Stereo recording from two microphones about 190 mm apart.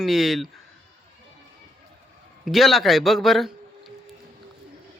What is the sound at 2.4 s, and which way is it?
A man's voice, centre (ahead or behind).